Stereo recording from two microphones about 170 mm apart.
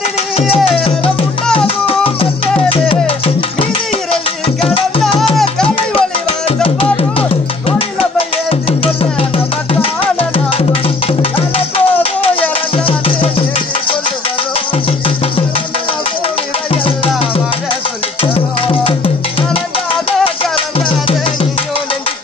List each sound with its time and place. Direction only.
2.7 s music: 30° left (ahead or behind)
6.6 s music: 30° left (ahead or behind)
10.3 s music: 30° left (ahead or behind)
18.2 s music: 30° left (ahead or behind)